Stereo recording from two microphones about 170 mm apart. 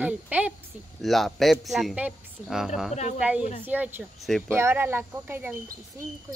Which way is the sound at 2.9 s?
40° left (ahead or behind).